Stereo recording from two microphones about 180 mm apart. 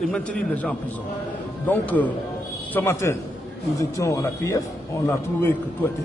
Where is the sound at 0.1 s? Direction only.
5° left (ahead or behind).